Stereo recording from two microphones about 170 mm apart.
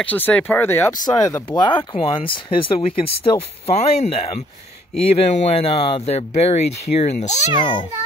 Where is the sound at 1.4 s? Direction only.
25° left (ahead or behind).